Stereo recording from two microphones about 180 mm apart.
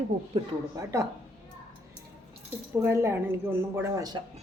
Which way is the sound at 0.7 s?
15° right (ahead or behind).